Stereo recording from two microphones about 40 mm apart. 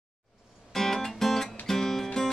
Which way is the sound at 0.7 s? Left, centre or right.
Centre.